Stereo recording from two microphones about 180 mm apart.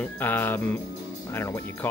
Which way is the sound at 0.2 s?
10° left (ahead or behind).